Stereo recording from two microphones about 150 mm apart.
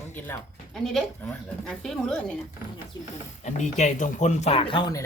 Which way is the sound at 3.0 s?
50° left (ahead or behind).